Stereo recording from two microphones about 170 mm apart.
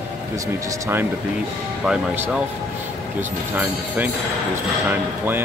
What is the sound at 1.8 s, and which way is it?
Speech, 10° right (ahead or behind).